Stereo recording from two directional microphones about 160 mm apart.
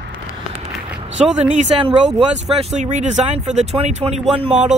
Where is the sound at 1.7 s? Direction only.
35° right (ahead or behind).